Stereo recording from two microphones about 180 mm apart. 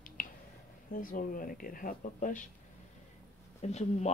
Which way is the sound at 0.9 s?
50° left (ahead or behind).